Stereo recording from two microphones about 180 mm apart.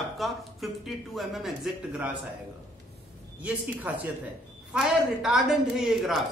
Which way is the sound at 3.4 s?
10° right (ahead or behind).